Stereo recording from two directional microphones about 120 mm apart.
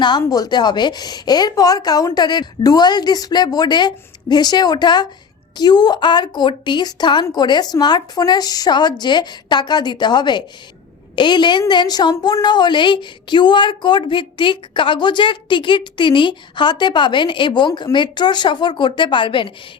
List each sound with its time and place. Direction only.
0.0 s speech: 35° left (ahead or behind)